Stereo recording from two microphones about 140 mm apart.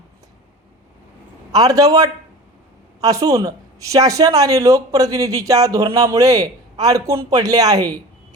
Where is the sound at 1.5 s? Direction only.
25° right (ahead or behind).